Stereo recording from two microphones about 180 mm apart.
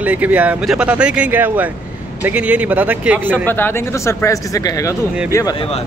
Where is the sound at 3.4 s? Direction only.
10° left (ahead or behind).